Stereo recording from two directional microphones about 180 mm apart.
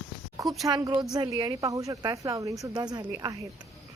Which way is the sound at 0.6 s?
20° right (ahead or behind).